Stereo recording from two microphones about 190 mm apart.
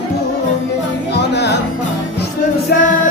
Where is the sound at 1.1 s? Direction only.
65° left (ahead or behind).